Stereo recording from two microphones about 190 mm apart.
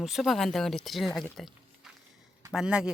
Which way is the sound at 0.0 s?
Centre (ahead or behind).